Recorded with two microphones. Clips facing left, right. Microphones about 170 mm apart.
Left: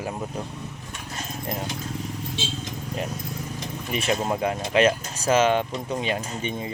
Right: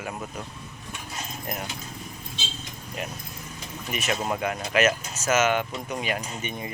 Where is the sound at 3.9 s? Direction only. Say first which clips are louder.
Left 3 dB; 30° left (ahead or behind).